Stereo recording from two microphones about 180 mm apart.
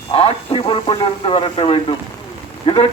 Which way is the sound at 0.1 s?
30° left (ahead or behind).